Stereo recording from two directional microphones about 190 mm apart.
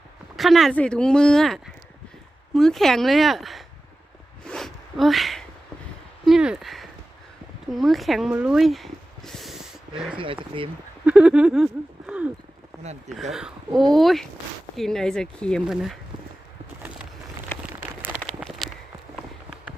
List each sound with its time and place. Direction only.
0.3 s speech: centre (ahead or behind)
4.4 s a sound: centre (ahead or behind)
6.2 s speech: 5° right (ahead or behind)
10.2 s speech: 25° right (ahead or behind)
11.0 s speech: 5° right (ahead or behind)
13.3 s speech: centre (ahead or behind)
17.7 s a sound: 10° right (ahead or behind)